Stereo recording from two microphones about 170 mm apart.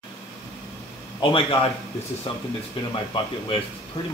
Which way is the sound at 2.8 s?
30° left (ahead or behind).